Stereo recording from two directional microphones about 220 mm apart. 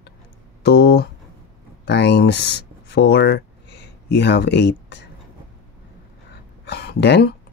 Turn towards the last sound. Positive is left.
turn(degrees=50)  # may be behind; listen again after turning